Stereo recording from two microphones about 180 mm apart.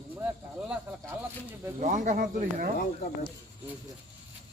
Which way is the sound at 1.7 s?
45° right (ahead or behind).